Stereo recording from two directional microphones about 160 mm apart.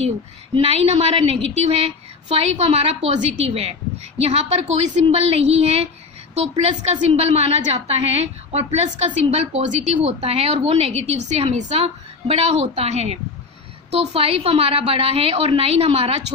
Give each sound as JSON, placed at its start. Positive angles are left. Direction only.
{"t": 0.6, "sound": "a woman's voice", "side_deg": -35}